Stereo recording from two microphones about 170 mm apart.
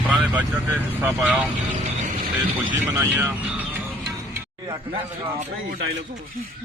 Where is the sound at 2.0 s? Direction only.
50° right (ahead or behind).